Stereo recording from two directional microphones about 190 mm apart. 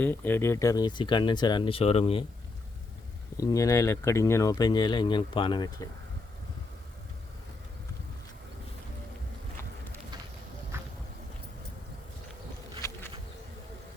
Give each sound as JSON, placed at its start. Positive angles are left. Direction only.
{"t": 0.0, "sound": "speech", "side_deg": 10}
{"t": 3.4, "sound": "speech", "side_deg": 15}
{"t": 12.8, "sound": "bee", "side_deg": 15}